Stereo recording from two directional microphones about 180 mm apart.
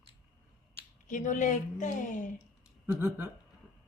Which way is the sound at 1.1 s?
45° left (ahead or behind).